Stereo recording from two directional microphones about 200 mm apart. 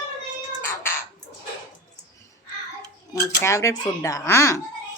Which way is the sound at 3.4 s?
15° left (ahead or behind).